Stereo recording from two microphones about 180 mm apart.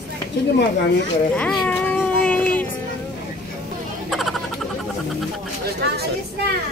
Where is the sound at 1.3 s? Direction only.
5° left (ahead or behind).